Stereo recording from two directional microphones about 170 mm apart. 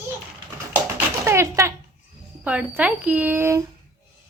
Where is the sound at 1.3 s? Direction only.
15° right (ahead or behind).